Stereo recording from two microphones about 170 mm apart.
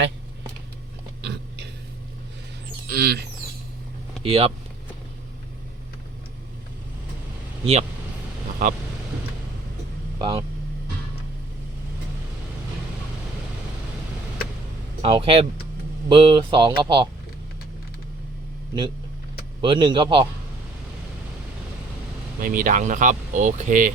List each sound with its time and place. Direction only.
1.2 s a sound: 90° right
2.8 s a sound: 65° right (ahead or behind)
4.2 s speech: 35° right (ahead or behind)
7.6 s speech: 35° right (ahead or behind)
8.6 s speech: 55° right (ahead or behind)
10.2 s speech: 30° right (ahead or behind)
15.0 s speech: 30° right (ahead or behind)
19.6 s speech: 30° right (ahead or behind)
22.4 s speech: 55° right (ahead or behind)